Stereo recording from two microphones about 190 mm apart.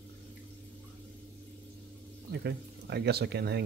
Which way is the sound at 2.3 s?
60° right (ahead or behind).